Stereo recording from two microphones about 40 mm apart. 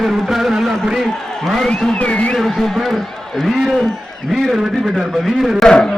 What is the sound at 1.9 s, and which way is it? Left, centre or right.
Speech, left.